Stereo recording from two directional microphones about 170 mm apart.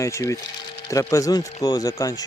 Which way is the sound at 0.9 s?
20° left (ahead or behind).